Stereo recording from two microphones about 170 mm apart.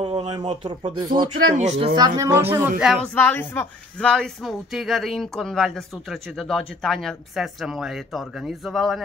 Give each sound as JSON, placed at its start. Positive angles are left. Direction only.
{"t": 0.0, "sound": "a sound", "side_deg": -30}
{"t": 0.9, "sound": "speech", "side_deg": -25}
{"t": 1.5, "sound": "speech", "side_deg": -40}
{"t": 2.0, "sound": "speech", "side_deg": -20}
{"t": 2.8, "sound": "speech", "side_deg": 0}
{"t": 3.2, "sound": "speech", "side_deg": 10}